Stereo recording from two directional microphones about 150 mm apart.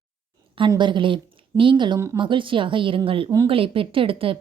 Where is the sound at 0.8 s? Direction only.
35° right (ahead or behind).